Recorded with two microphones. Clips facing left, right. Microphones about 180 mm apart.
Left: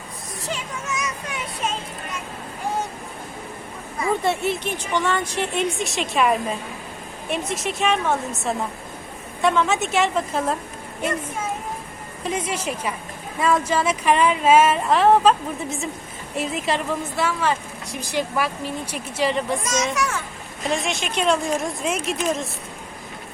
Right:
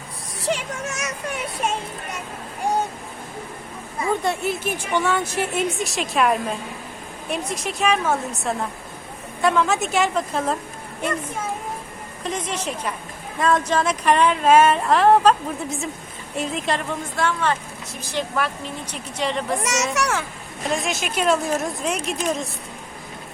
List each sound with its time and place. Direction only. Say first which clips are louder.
0.5 s a sound: even; 75° right (ahead or behind)
4.2 s speech: left 1 dB; centre (ahead or behind)
12.2 s speech: left 1 dB; 5° left (ahead or behind)
19.6 s speech: even; 70° right (ahead or behind)
20.7 s speech: even; centre (ahead or behind)